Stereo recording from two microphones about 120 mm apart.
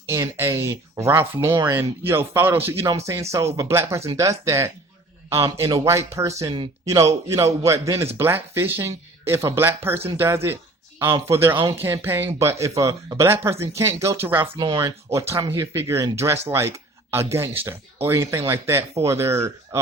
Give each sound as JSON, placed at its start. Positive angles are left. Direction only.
{"t": 0.1, "sound": "speech", "side_deg": -20}
{"t": 2.8, "sound": "speech", "side_deg": -30}
{"t": 11.5, "sound": "speech", "side_deg": -40}
{"t": 11.8, "sound": "speech", "side_deg": -20}
{"t": 14.5, "sound": "speech", "side_deg": -45}
{"t": 14.8, "sound": "speech", "side_deg": -25}